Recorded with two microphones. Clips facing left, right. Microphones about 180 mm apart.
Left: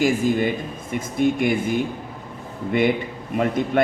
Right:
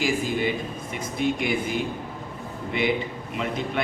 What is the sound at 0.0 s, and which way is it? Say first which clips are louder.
A man's voice: left 5 dB; 50° left (ahead or behind).